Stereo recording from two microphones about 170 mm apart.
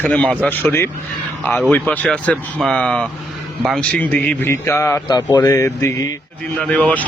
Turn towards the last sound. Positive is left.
turn(degrees=10)  # may be behind; listen again after turning